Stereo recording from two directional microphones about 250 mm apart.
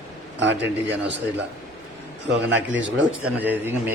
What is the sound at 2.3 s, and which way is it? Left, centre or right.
Speech, right.